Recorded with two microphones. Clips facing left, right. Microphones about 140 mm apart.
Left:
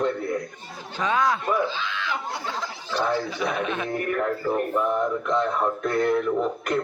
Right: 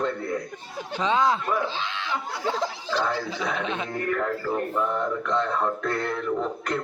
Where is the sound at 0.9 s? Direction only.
25° right (ahead or behind).